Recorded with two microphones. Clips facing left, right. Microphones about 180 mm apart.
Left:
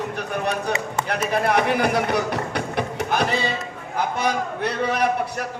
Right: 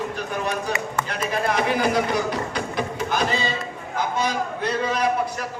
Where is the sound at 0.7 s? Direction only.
60° left (ahead or behind).